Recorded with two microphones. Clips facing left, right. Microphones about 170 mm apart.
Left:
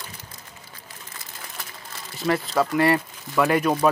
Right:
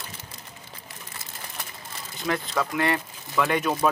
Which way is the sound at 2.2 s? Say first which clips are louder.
Left 5 dB; 5° left (ahead or behind).